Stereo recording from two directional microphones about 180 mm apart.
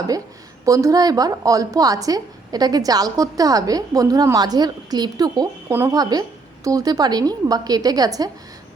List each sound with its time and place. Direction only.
0.6 s a woman's voice: 20° right (ahead or behind)